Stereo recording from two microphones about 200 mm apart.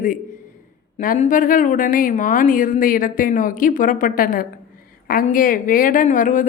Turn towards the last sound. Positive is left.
turn(degrees=40)  # may be behind; listen again after turning